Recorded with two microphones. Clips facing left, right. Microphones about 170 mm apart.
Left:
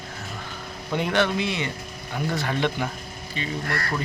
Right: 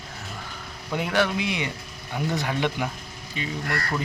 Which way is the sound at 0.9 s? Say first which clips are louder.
Left 1 dB; 5° right (ahead or behind).